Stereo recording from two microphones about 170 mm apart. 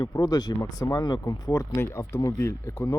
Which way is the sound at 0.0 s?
25° left (ahead or behind).